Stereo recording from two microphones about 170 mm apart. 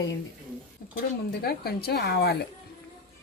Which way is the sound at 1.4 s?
65° left (ahead or behind).